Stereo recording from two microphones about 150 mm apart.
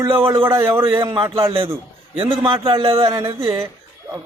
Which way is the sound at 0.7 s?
20° right (ahead or behind).